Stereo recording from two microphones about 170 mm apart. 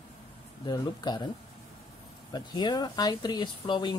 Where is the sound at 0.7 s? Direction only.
25° left (ahead or behind).